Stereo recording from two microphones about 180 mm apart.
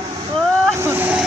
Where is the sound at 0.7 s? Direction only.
15° right (ahead or behind).